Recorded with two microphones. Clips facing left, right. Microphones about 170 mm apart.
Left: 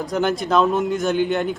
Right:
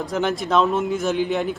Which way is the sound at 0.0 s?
Centre (ahead or behind).